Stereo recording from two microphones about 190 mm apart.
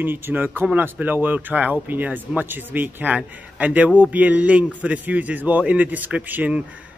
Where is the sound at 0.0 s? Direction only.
10° right (ahead or behind).